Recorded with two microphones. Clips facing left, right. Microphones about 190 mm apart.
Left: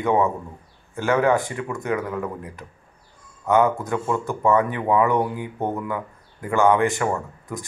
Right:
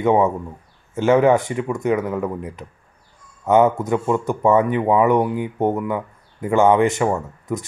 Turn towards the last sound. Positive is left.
turn(degrees=-20)  # may be behind; listen again after turning